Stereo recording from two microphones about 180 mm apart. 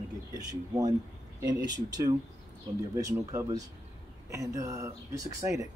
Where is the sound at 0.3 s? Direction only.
20° right (ahead or behind).